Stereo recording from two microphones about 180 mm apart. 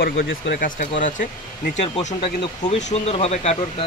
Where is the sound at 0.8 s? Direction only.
45° left (ahead or behind).